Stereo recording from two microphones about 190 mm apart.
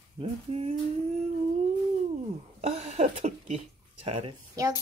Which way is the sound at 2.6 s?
35° right (ahead or behind).